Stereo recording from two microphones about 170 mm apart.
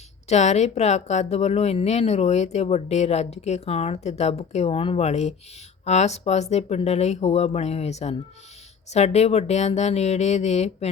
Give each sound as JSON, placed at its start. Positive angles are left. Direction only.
{"t": 0.3, "sound": "a woman's voice", "side_deg": 40}